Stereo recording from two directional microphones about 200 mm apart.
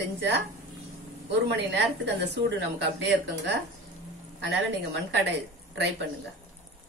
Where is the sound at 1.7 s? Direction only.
60° right (ahead or behind).